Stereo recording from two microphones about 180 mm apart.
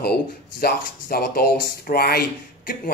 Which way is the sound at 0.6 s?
60° left (ahead or behind).